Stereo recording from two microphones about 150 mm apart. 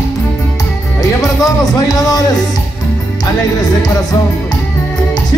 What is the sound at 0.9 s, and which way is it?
Music, 25° left (ahead or behind).